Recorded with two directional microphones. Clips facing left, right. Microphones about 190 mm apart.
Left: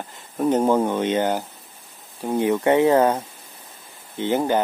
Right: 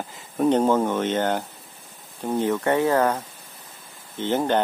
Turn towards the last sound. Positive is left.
turn(degrees=10)  # may be behind; listen again after turning